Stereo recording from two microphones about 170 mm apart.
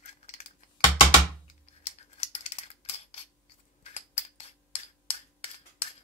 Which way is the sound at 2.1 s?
40° left (ahead or behind).